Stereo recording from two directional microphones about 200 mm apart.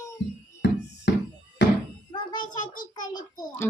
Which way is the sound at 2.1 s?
20° left (ahead or behind).